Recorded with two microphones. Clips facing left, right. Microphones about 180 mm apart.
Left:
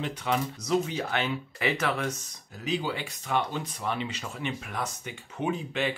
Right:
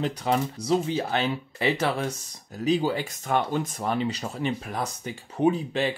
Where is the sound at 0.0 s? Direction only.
40° right (ahead or behind).